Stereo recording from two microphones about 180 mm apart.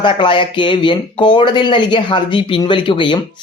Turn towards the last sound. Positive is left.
turn(degrees=25)  # may be behind; listen again after turning